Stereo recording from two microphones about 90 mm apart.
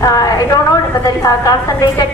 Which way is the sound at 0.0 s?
40° left (ahead or behind).